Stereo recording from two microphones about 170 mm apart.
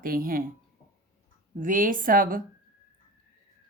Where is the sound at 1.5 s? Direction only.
50° right (ahead or behind).